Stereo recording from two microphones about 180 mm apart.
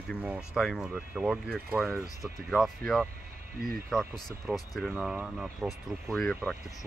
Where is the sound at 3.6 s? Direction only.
55° right (ahead or behind).